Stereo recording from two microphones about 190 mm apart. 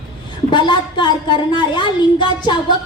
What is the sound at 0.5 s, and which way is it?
A woman's voice, 25° left (ahead or behind).